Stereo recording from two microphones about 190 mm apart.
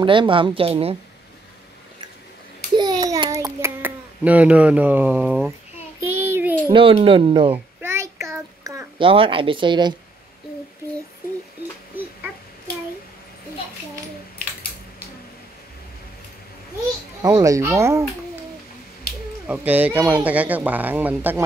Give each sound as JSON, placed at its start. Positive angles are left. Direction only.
{"t": 0.0, "sound": "speech", "side_deg": -25}
{"t": 2.7, "sound": "a sound", "side_deg": -20}
{"t": 6.1, "sound": "child singing", "side_deg": -10}
{"t": 6.7, "sound": "speech", "side_deg": -30}
{"t": 7.5, "sound": "a sound", "side_deg": -15}
{"t": 17.2, "sound": "speech", "side_deg": -15}
{"t": 19.4, "sound": "speech", "side_deg": -10}